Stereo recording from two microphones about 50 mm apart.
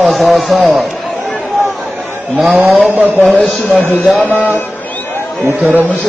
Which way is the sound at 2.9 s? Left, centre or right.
Right.